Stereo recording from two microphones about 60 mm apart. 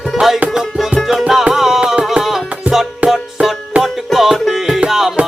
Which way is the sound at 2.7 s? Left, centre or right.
Right.